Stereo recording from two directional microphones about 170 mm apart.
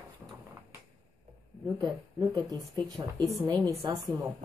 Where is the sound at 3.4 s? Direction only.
20° right (ahead or behind).